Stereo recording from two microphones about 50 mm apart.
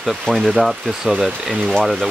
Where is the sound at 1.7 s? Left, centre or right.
Centre.